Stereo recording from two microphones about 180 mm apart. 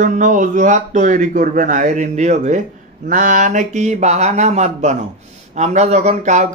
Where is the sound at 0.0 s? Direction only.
45° right (ahead or behind).